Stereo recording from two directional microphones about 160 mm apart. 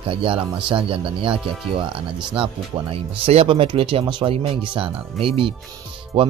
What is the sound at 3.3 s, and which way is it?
Speech, 40° right (ahead or behind).